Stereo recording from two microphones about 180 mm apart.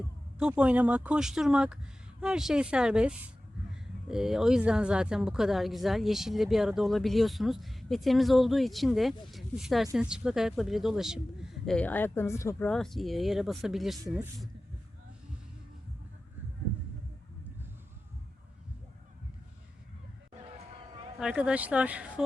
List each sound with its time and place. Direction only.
0.3 s speech: 5° right (ahead or behind)
21.2 s speech: 5° right (ahead or behind)